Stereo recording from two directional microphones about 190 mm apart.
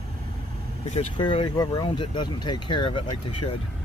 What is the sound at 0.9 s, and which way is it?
Speech, 25° left (ahead or behind).